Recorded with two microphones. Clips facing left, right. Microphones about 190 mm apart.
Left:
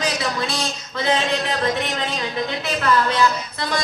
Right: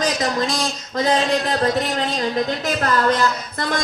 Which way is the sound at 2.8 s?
45° right (ahead or behind).